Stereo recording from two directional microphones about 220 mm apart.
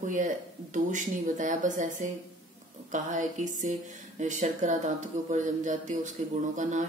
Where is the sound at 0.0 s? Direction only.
35° right (ahead or behind).